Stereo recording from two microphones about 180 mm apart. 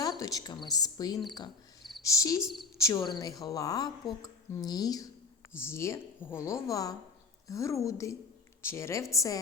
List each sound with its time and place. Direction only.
0.0 s a woman's voice: 20° left (ahead or behind)